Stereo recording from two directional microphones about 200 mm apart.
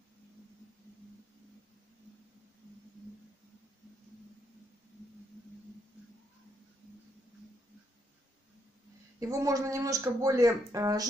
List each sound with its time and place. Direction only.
9.2 s speech: 15° right (ahead or behind)